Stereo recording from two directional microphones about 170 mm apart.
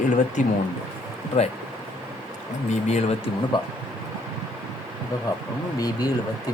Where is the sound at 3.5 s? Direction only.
30° left (ahead or behind).